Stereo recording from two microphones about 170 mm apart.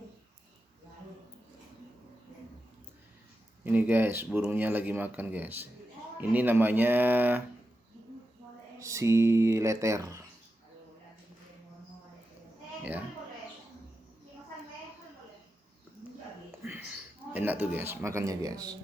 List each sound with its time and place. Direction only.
3.6 s speech: 10° right (ahead or behind)
8.8 s speech: 20° right (ahead or behind)
17.3 s speech: 10° right (ahead or behind)